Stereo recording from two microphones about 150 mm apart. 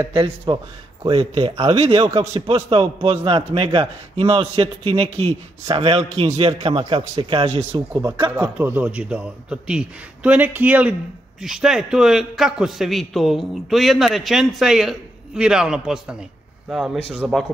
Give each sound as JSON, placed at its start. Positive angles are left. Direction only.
{"t": 0.5, "sound": "a man's voice", "side_deg": -30}
{"t": 8.4, "sound": "a man's voice", "side_deg": -10}